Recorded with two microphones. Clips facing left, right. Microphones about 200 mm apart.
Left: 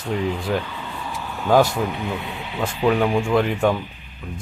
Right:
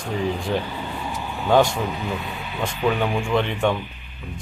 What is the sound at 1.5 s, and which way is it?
Speech, 5° left (ahead or behind).